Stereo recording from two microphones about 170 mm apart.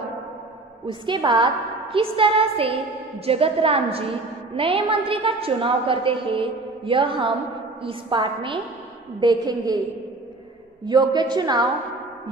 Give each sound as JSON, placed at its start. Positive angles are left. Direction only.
{"t": 0.8, "sound": "a woman's voice", "side_deg": -30}
{"t": 10.9, "sound": "a woman's voice", "side_deg": -25}